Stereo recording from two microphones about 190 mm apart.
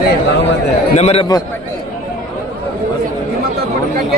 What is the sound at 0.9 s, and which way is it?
Speech, 30° left (ahead or behind).